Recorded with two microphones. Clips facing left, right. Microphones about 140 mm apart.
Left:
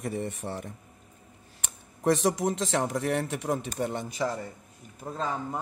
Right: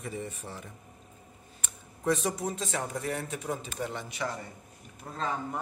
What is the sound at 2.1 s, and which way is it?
A man's voice, 85° left.